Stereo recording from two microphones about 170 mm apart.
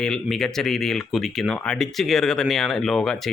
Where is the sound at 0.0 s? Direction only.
5° left (ahead or behind).